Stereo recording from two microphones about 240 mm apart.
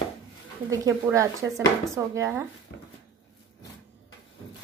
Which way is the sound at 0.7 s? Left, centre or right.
Centre.